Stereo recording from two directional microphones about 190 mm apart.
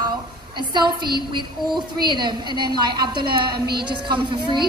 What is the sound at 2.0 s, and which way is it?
A woman's voice, 25° right (ahead or behind).